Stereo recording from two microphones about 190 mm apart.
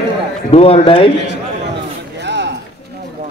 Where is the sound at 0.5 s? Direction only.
30° left (ahead or behind).